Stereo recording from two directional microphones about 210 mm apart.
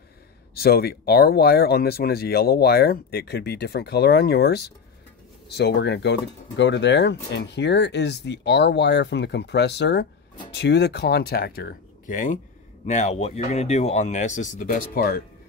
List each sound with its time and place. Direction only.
0.6 s speech: 50° left (ahead or behind)